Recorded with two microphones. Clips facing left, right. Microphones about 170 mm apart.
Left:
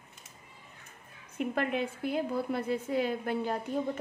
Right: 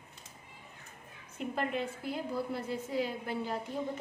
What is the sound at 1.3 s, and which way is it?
A woman's voice, 60° left (ahead or behind).